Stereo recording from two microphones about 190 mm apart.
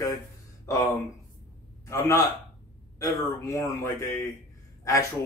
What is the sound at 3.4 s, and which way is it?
Speech, 15° left (ahead or behind).